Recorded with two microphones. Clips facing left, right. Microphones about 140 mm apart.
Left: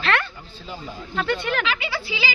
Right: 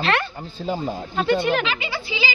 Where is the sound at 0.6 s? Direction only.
45° right (ahead or behind).